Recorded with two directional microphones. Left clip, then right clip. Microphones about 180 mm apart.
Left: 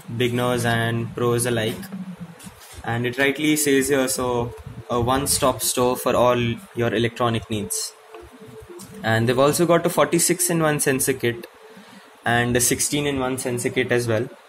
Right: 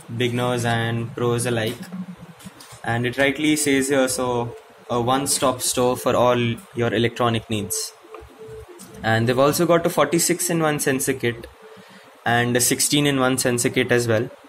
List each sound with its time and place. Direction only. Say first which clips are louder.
0.2 s speech: left 1 dB; 10° left (ahead or behind)
2.8 s speech: right 1 dB; 10° right (ahead or behind)
9.0 s speech: even; centre (ahead or behind)
12.9 s speech: right 4 dB; 25° right (ahead or behind); by 14.2 s 10° right (ahead or behind)